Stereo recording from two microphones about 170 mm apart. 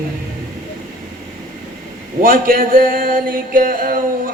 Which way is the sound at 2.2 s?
55° right (ahead or behind).